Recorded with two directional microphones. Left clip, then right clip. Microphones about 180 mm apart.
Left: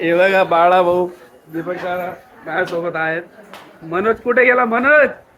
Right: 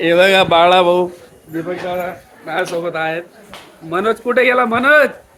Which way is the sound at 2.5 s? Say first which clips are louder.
Even; 10° right (ahead or behind).